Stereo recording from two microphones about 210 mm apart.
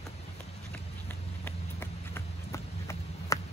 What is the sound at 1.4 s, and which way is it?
Run, 10° left (ahead or behind).